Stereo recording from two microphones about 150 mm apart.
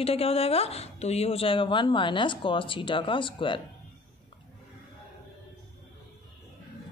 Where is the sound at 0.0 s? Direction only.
40° left (ahead or behind).